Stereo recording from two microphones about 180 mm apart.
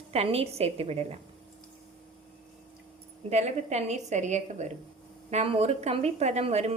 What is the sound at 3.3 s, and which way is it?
A woman's voice, 40° right (ahead or behind).